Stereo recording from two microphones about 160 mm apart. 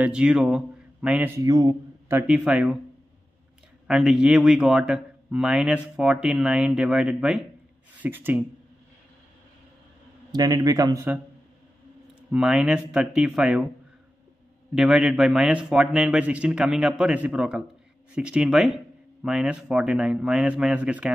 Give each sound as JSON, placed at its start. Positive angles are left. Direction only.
{"t": 0.0, "sound": "speech", "side_deg": -5}
{"t": 1.4, "sound": "a man's voice", "side_deg": -25}
{"t": 2.1, "sound": "speech", "side_deg": -5}
{"t": 3.8, "sound": "a man's voice", "side_deg": -5}
{"t": 10.3, "sound": "speech", "side_deg": -25}
{"t": 12.3, "sound": "a man's voice", "side_deg": -5}
{"t": 14.8, "sound": "a man's voice", "side_deg": -5}